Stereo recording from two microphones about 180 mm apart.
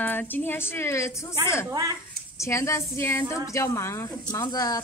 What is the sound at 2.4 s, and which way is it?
A woman's voice, 15° left (ahead or behind).